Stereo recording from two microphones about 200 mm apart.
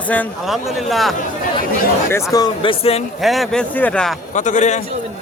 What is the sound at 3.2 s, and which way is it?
Speech, centre (ahead or behind).